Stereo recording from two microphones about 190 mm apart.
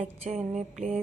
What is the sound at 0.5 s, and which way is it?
Mantra, 35° right (ahead or behind).